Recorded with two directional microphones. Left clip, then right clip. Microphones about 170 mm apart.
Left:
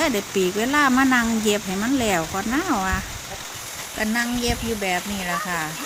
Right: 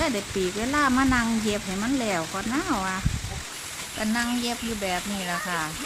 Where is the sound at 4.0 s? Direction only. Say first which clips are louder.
Left 4 dB; 15° left (ahead or behind).